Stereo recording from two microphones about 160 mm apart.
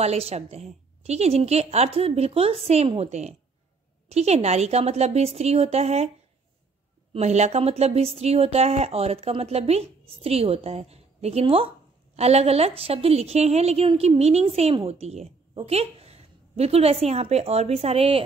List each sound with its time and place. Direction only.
0.0 s a woman's voice: 40° right (ahead or behind)
7.1 s speech: 45° right (ahead or behind)